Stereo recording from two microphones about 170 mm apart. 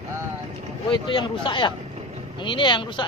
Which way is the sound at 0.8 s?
25° left (ahead or behind).